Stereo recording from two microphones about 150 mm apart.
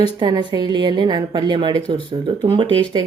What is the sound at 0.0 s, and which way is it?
Speech, 30° right (ahead or behind).